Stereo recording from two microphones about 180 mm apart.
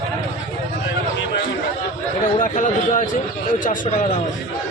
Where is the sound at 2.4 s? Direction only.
45° left (ahead or behind).